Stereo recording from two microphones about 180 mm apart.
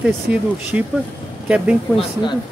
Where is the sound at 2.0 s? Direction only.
25° left (ahead or behind).